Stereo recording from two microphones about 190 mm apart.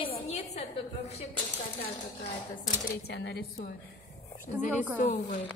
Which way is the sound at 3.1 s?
60° left (ahead or behind).